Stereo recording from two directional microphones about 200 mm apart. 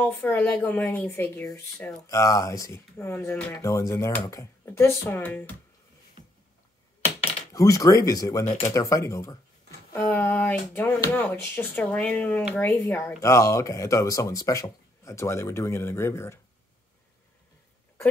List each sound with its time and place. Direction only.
0.0 s speech: 10° left (ahead or behind)
7.5 s speech: 15° left (ahead or behind)